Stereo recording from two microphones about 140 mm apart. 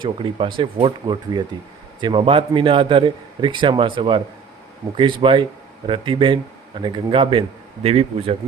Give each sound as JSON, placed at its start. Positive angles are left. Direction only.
{"t": 0.0, "sound": "a man's voice", "side_deg": -35}